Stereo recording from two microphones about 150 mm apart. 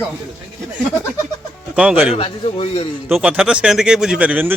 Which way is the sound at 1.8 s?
10° right (ahead or behind).